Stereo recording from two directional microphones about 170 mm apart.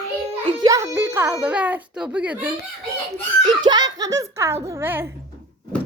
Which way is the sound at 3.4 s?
25° right (ahead or behind).